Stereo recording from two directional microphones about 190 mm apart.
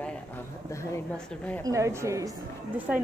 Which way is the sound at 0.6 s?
15° left (ahead or behind).